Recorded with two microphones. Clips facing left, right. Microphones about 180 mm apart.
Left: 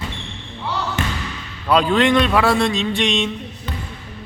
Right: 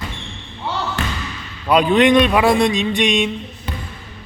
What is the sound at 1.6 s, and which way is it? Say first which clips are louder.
A man's voice: right 3 dB; 15° right (ahead or behind).